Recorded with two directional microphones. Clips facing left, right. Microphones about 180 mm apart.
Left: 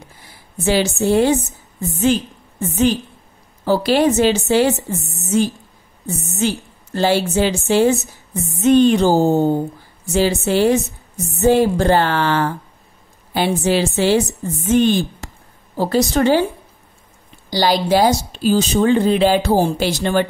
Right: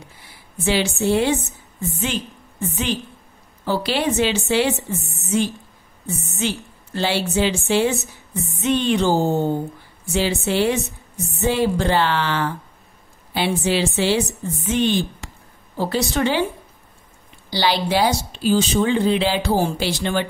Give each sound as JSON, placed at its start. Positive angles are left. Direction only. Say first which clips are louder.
{"t": 0.7, "sound": "music", "louder": "left 3 dB", "side_deg": 40}
{"t": 2.7, "sound": "music", "louder": "left 9 dB", "side_deg": 40}
{"t": 3.6, "sound": "a woman's voice", "louder": "left 6 dB", "side_deg": 45}
{"t": 8.5, "sound": "music", "louder": "left 8 dB", "side_deg": 45}
{"t": 10.1, "sound": "a woman's voice", "louder": "left 4 dB", "side_deg": 40}
{"t": 15.7, "sound": "music", "louder": "left 5 dB", "side_deg": 40}
{"t": 17.5, "sound": "a woman's voice", "louder": "left 4 dB", "side_deg": 40}